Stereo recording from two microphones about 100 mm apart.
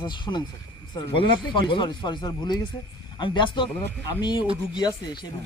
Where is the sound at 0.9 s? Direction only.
60° left (ahead or behind).